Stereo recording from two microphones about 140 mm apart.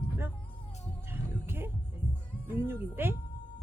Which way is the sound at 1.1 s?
15° right (ahead or behind).